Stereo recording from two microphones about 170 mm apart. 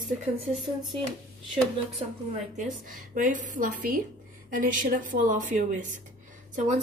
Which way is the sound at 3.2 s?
50° right (ahead or behind).